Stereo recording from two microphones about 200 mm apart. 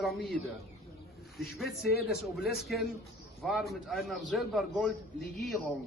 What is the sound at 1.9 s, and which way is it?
Speech, 50° left (ahead or behind).